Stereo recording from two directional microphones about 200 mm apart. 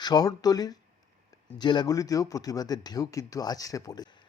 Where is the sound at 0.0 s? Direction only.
20° left (ahead or behind).